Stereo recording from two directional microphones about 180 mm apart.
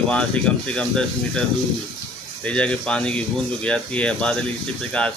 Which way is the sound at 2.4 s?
5° left (ahead or behind).